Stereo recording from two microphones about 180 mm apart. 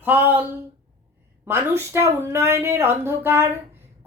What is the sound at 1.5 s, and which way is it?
A woman's voice, 15° right (ahead or behind).